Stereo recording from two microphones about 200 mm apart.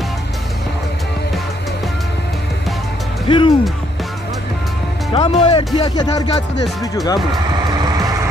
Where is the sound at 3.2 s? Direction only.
25° left (ahead or behind).